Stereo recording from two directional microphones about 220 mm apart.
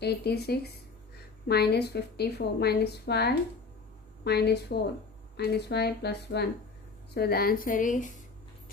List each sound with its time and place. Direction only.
0.0 s a woman's voice: 45° left (ahead or behind)